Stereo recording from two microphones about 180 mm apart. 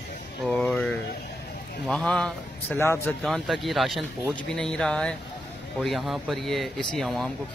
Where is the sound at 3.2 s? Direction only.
Centre (ahead or behind).